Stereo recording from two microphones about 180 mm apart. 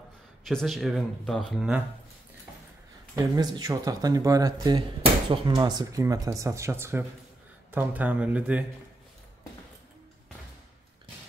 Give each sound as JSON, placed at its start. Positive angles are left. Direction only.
{"t": 0.5, "sound": "speech", "side_deg": 0}
{"t": 3.2, "sound": "speech", "side_deg": -20}